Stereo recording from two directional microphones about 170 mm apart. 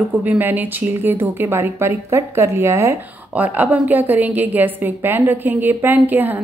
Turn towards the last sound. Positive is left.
turn(degrees=-10)  # may be behind; listen again after turning